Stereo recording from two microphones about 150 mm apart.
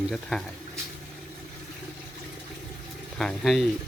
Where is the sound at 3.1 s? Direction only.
5° left (ahead or behind).